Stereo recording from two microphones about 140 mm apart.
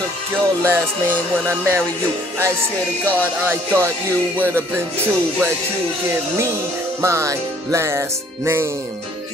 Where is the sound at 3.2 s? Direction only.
15° right (ahead or behind).